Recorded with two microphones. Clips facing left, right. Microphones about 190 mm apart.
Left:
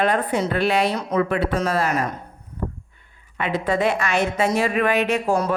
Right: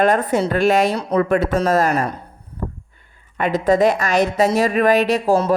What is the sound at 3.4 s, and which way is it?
A woman's voice, 40° right (ahead or behind).